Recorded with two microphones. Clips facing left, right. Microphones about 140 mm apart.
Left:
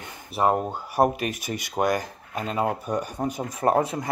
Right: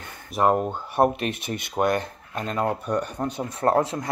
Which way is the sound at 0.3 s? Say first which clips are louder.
Right 2 dB; centre (ahead or behind).